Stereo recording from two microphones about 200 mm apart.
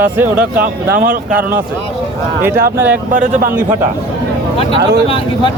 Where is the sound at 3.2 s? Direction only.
45° right (ahead or behind).